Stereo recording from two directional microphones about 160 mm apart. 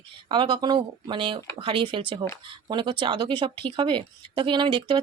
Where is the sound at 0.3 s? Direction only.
30° right (ahead or behind).